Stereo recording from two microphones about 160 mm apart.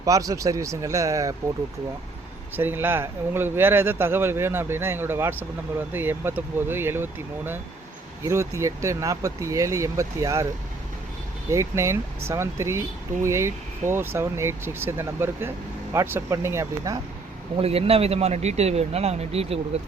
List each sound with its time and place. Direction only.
0.0 s speech: 20° right (ahead or behind)
2.6 s speech: 15° right (ahead or behind)
11.4 s speech: 15° right (ahead or behind)
17.6 s speech: 40° right (ahead or behind)